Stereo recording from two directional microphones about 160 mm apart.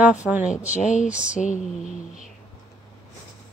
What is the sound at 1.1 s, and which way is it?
Speech, 5° right (ahead or behind).